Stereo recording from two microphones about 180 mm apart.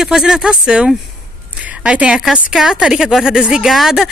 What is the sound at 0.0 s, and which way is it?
A woman's voice, 5° right (ahead or behind).